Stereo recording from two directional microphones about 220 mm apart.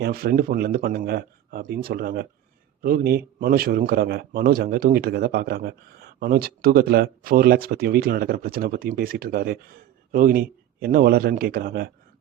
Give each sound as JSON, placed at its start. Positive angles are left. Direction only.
{"t": 0.0, "sound": "a man's voice", "side_deg": -45}